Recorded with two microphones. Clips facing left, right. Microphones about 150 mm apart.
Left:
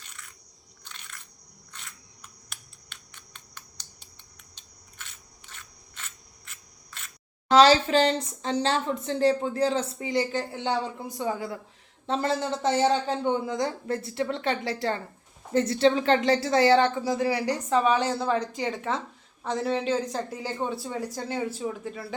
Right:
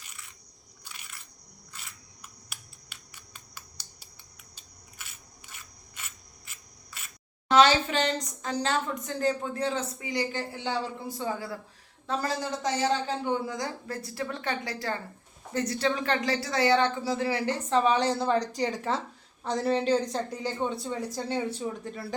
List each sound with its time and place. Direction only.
0.9 s crushing: 10° right (ahead or behind)
1.7 s a sound: 5° right (ahead or behind)
7.5 s a woman's voice: 35° left (ahead or behind); by 22.1 s centre (ahead or behind)